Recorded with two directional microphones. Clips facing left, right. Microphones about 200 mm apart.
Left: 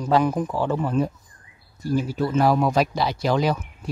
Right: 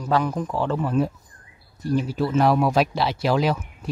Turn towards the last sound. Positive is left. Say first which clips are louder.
# even
turn(degrees=0)  # may be behind; listen again after turning